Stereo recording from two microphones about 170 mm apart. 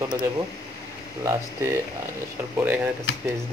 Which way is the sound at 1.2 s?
15° right (ahead or behind).